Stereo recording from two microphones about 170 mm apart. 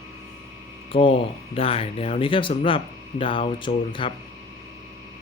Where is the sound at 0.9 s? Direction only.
30° left (ahead or behind).